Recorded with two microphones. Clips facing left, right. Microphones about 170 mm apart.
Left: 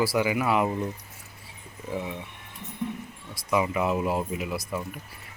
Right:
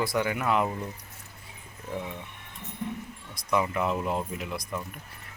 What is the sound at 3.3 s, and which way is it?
Speech, 5° left (ahead or behind).